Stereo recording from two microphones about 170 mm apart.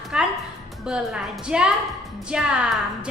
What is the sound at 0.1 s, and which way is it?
Music, 5° right (ahead or behind).